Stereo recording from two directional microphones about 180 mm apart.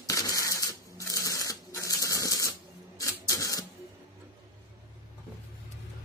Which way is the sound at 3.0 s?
20° left (ahead or behind).